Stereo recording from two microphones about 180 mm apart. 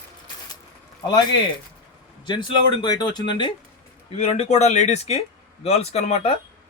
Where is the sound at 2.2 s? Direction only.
25° left (ahead or behind).